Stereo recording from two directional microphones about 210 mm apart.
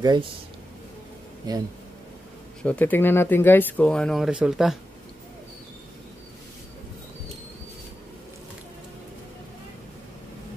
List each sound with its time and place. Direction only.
0.0 s speech: 20° right (ahead or behind)
1.5 s speech: 20° right (ahead or behind)
2.6 s speech: 5° left (ahead or behind)